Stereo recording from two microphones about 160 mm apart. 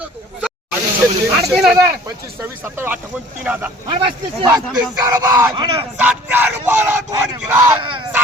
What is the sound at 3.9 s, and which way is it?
Speech, 30° right (ahead or behind).